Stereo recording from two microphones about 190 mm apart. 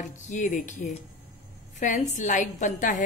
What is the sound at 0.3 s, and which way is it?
A woman's voice, 40° left (ahead or behind).